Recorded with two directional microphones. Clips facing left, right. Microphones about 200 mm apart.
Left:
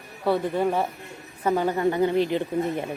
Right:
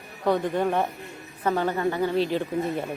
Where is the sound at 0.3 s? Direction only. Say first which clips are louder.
Even; 5° left (ahead or behind).